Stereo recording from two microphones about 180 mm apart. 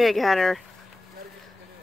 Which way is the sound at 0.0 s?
Centre (ahead or behind).